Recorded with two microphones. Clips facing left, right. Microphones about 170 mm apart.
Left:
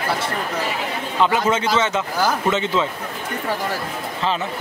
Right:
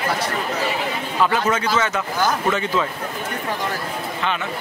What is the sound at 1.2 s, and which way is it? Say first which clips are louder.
Speech: left 1 dB; 15° left (ahead or behind).